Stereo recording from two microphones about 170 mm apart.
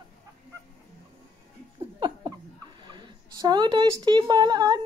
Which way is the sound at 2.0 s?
25° right (ahead or behind).